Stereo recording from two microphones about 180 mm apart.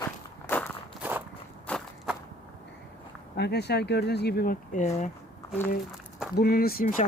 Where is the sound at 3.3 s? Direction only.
65° left (ahead or behind); by 5.1 s 40° left (ahead or behind).